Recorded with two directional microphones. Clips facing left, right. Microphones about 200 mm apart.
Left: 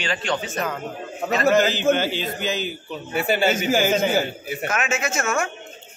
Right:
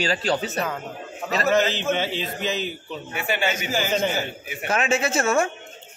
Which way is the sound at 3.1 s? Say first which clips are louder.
Left 5 dB; 35° left (ahead or behind).